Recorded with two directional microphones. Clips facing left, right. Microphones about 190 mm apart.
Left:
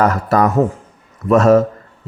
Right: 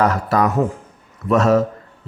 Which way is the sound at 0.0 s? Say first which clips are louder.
Left 3 dB; 45° left (ahead or behind).